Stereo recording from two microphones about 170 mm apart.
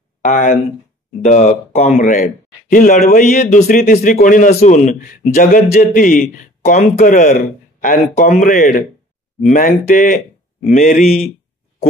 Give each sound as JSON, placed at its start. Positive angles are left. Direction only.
{"t": 0.2, "sound": "speech", "side_deg": 50}